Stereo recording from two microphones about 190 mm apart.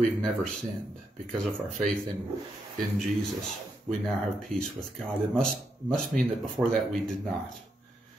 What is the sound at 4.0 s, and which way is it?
Speech, centre (ahead or behind).